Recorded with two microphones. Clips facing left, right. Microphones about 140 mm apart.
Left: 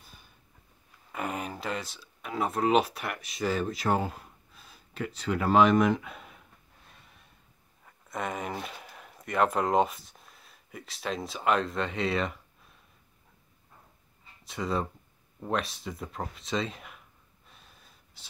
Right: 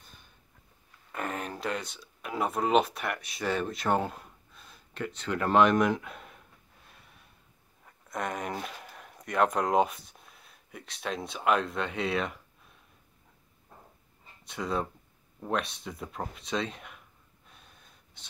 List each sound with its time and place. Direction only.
0.0 s a sound: 5° left (ahead or behind)
1.1 s speech: 5° left (ahead or behind)
6.9 s snort: centre (ahead or behind)
7.8 s speech: centre (ahead or behind)
14.4 s speech: centre (ahead or behind)
17.5 s a sound: centre (ahead or behind)